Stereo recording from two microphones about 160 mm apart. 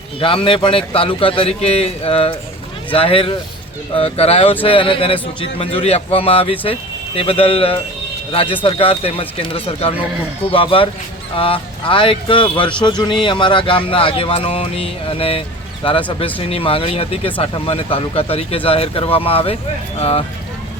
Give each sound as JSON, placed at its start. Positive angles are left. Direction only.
{"t": 0.2, "sound": "speech", "side_deg": 35}